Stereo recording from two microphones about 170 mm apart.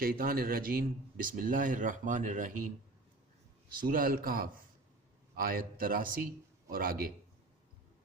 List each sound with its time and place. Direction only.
0.0 s speech: 60° right (ahead or behind)